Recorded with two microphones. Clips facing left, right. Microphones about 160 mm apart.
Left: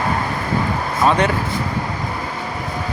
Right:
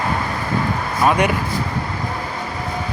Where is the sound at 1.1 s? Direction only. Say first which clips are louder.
Even; 10° right (ahead or behind).